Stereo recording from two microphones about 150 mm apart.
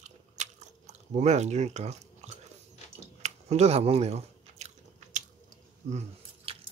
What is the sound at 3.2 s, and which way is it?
Chewing, 45° right (ahead or behind).